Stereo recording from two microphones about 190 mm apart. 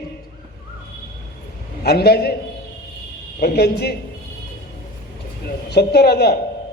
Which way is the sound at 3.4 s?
55° left (ahead or behind).